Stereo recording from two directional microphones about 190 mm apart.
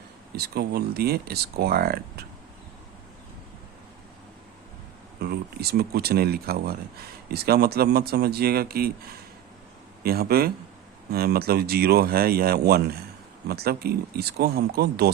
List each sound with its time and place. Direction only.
0.3 s speech: 55° right (ahead or behind)
5.2 s a man's voice: 55° right (ahead or behind)